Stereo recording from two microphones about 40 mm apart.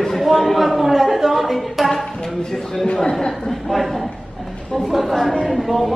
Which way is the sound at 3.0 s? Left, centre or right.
Centre.